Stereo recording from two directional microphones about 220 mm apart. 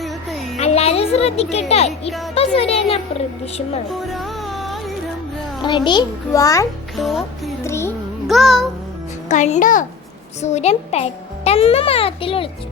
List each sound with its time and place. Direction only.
0.0 s music: centre (ahead or behind)
0.6 s music: 30° left (ahead or behind)
1.9 s music: centre (ahead or behind)
2.3 s a child's voice: 25° left (ahead or behind)
3.8 s music: centre (ahead or behind)
5.6 s a child's voice: 20° left (ahead or behind)
6.9 s music: centre (ahead or behind)
7.6 s music: 10° left (ahead or behind)
8.3 s music: centre (ahead or behind)
9.3 s a child's voice: 35° left (ahead or behind)